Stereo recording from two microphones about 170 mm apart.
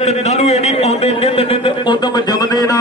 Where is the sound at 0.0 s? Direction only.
40° left (ahead or behind).